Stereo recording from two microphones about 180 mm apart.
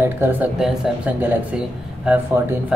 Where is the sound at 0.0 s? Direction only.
10° right (ahead or behind).